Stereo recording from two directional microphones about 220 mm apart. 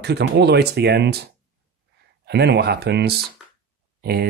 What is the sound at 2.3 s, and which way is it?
Speech, 50° right (ahead or behind).